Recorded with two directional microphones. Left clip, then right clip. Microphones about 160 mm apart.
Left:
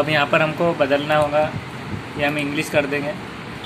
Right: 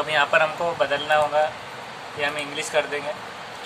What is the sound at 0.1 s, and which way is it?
Speech, 20° left (ahead or behind).